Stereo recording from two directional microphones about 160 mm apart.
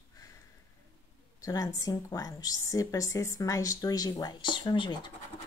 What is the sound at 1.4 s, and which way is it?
Speech, 20° left (ahead or behind).